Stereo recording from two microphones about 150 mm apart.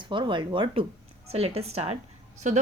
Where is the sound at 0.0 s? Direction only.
35° right (ahead or behind).